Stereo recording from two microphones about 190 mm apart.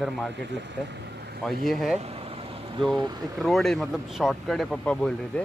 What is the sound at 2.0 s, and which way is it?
Vehicle, 30° right (ahead or behind).